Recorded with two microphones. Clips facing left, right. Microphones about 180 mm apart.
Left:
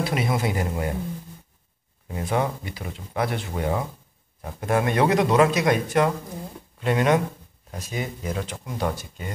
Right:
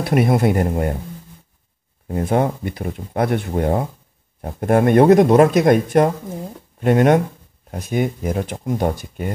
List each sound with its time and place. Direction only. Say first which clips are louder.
0.0 s speech: right 8 dB; 55° right (ahead or behind)
2.0 s speech: right 6 dB; 50° right (ahead or behind)